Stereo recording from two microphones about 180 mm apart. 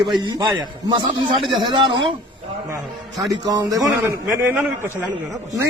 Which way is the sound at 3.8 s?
Centre (ahead or behind).